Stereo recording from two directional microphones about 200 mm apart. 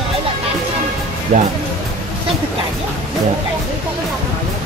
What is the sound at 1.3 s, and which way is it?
Speech, 40° right (ahead or behind).